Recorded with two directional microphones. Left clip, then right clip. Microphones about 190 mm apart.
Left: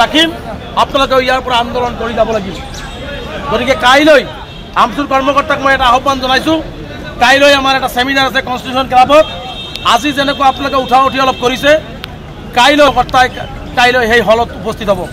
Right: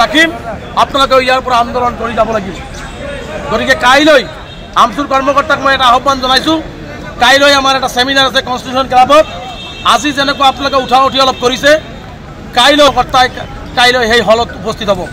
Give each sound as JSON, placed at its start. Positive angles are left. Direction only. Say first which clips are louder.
{"t": 0.7, "sound": "a man's voice", "louder": "right 2 dB", "side_deg": 10}
{"t": 3.5, "sound": "a man's voice", "louder": "right 1 dB", "side_deg": 10}